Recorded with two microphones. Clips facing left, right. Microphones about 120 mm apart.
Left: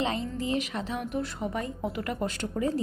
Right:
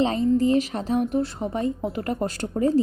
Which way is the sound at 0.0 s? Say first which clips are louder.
Right 10 dB; 40° right (ahead or behind).